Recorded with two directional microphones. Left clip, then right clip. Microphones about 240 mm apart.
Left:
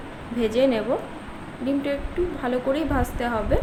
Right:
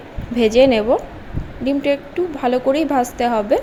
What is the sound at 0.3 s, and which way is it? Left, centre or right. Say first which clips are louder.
A woman's voice: right 8 dB; right.